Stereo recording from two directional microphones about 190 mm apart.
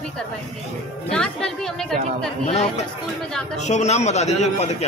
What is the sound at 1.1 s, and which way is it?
Speech, 5° left (ahead or behind).